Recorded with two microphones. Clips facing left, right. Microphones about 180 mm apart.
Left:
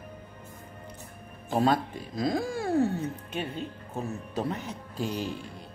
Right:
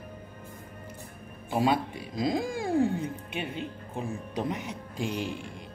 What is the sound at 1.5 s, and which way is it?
Speech, 10° right (ahead or behind).